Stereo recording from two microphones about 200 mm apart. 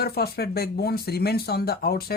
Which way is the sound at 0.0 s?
50° left (ahead or behind).